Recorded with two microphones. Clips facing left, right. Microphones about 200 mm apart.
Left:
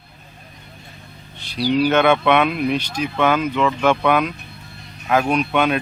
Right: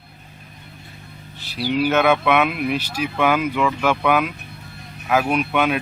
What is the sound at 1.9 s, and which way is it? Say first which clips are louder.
Speech: even; 5° right (ahead or behind).